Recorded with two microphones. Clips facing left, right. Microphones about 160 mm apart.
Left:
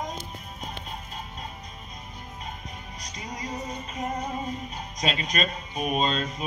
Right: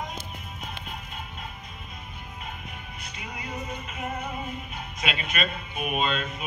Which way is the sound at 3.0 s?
40° left (ahead or behind).